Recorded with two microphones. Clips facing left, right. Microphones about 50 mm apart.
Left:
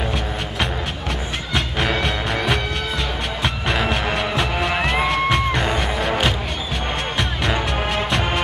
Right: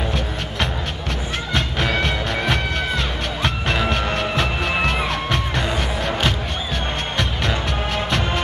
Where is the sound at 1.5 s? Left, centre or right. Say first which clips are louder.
Even; centre.